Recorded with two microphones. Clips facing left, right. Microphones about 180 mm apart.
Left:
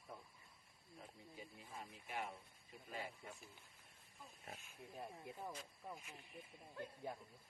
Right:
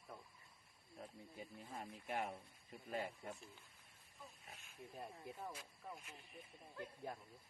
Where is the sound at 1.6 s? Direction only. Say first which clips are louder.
Right 4 dB; 50° right (ahead or behind).